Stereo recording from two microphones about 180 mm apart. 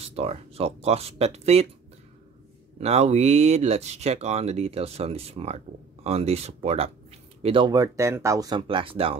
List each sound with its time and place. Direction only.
0.0 s speech: 35° right (ahead or behind)
2.8 s speech: 35° right (ahead or behind)